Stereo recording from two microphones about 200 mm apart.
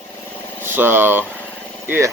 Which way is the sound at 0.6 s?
10° right (ahead or behind).